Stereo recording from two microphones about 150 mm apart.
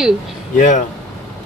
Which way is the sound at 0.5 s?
55° left (ahead or behind).